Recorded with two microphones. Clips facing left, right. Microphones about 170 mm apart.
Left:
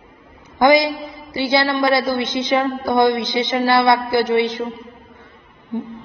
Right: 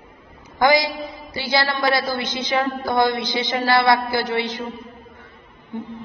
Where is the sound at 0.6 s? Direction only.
20° left (ahead or behind).